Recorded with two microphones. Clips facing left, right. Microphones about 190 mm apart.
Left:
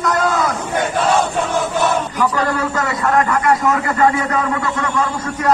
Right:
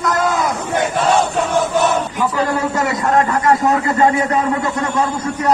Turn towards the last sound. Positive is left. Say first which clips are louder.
# right 2 dB
turn(degrees=-25)  # may be behind; listen again after turning